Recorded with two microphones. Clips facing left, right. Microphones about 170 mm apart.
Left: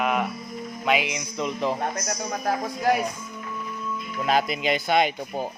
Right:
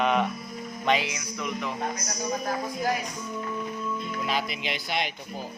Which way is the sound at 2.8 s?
65° left (ahead or behind).